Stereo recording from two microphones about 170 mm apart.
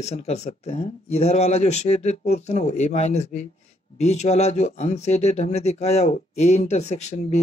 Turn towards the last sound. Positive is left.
turn(degrees=40)  # may be behind; listen again after turning